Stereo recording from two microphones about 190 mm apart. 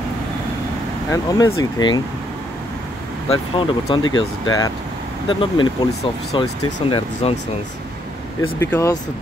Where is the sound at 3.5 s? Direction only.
25° left (ahead or behind).